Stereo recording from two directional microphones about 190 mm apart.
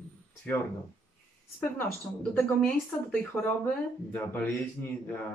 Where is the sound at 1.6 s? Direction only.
10° left (ahead or behind).